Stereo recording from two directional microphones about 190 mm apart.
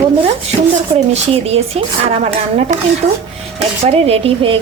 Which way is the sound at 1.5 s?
35° right (ahead or behind).